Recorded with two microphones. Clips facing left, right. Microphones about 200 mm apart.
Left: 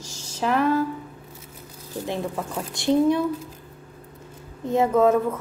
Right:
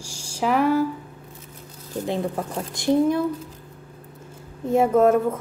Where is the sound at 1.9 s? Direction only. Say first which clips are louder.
Right 3 dB; 20° right (ahead or behind).